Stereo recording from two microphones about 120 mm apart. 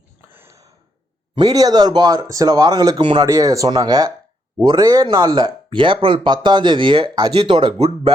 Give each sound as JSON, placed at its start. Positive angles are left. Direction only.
{"t": 0.3, "sound": "a sound", "side_deg": -25}
{"t": 1.4, "sound": "speech", "side_deg": -35}
{"t": 3.0, "sound": "speech", "side_deg": -45}
{"t": 3.2, "sound": "speech", "side_deg": -30}
{"t": 7.8, "sound": "speech", "side_deg": -60}